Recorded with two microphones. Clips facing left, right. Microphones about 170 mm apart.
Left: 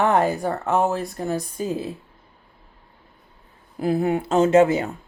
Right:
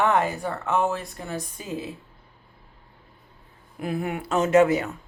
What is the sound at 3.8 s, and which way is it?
Speech, 30° left (ahead or behind).